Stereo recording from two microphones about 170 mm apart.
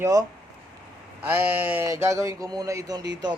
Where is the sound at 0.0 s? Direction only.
20° right (ahead or behind).